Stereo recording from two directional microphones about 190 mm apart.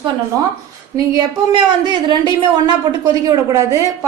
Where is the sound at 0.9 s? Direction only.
20° right (ahead or behind).